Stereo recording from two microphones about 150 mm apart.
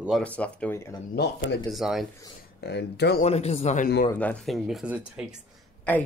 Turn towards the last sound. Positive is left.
turn(degrees=10)  # may be behind; listen again after turning